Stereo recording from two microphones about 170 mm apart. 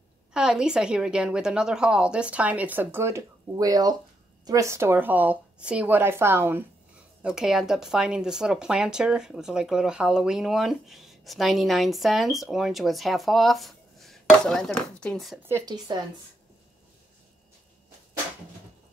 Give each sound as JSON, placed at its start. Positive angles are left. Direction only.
{"t": 0.3, "sound": "speech", "side_deg": -5}
{"t": 7.2, "sound": "speech", "side_deg": -5}
{"t": 15.4, "sound": "speech", "side_deg": -20}